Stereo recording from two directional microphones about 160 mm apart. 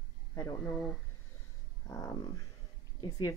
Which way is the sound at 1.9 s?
25° left (ahead or behind).